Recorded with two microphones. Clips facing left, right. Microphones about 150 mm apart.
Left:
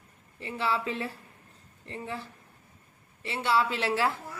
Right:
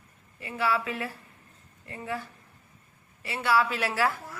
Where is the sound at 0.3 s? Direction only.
25° left (ahead or behind).